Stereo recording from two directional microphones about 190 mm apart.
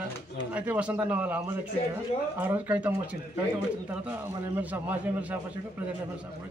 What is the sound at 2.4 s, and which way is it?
Speech, 10° right (ahead or behind).